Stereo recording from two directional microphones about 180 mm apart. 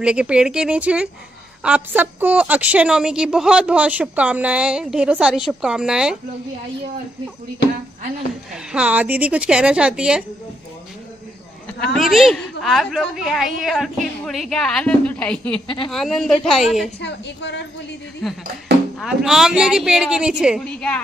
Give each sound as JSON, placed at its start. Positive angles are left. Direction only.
{"t": 0.0, "sound": "a woman's voice", "side_deg": -5}
{"t": 8.7, "sound": "a woman's voice", "side_deg": -10}
{"t": 11.8, "sound": "a woman's voice", "side_deg": 0}
{"t": 17.0, "sound": "a woman's voice", "side_deg": 75}
{"t": 18.2, "sound": "a woman's voice", "side_deg": 0}